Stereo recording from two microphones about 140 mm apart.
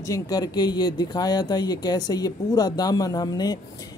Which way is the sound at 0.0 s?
25° left (ahead or behind).